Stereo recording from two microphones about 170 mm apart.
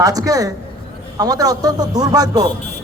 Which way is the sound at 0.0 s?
20° right (ahead or behind).